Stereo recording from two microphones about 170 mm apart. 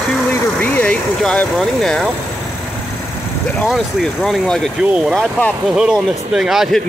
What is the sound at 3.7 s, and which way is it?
Speech, centre (ahead or behind).